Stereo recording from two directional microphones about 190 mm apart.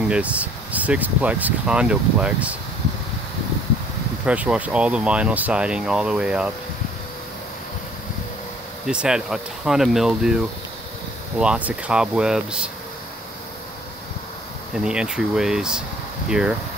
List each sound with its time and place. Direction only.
0.1 s speech: 5° right (ahead or behind)
4.3 s speech: 5° right (ahead or behind)
8.8 s speech: 5° right (ahead or behind)
14.8 s speech: 5° right (ahead or behind)